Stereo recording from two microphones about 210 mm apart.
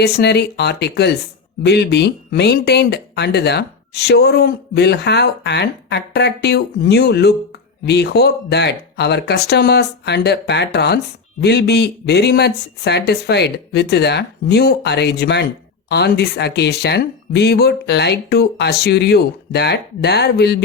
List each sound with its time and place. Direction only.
0.0 s speech: 50° left (ahead or behind)